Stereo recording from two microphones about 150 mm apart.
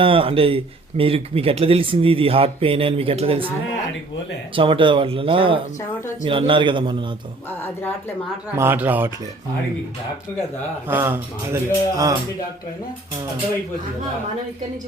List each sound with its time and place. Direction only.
0.0 s speech: 35° right (ahead or behind)
4.5 s speech: 35° right (ahead or behind)
7.6 s speech: 15° left (ahead or behind)
8.5 s speech: 15° right (ahead or behind)
10.8 s speech: 15° right (ahead or behind)